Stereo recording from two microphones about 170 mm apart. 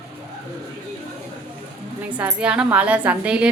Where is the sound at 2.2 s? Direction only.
10° right (ahead or behind).